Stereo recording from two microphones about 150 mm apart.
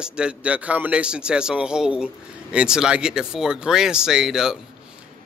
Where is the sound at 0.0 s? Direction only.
5° right (ahead or behind).